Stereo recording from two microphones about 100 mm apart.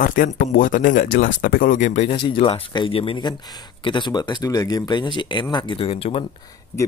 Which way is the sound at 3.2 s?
50° left (ahead or behind).